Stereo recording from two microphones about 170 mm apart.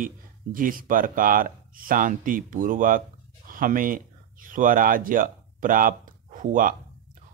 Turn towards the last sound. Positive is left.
turn(degrees=-50)  # may be behind; listen again after turning